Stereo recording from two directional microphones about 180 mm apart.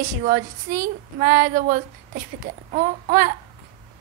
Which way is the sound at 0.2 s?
50° right (ahead or behind).